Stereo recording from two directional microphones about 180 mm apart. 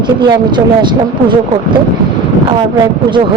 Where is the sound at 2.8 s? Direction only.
25° right (ahead or behind).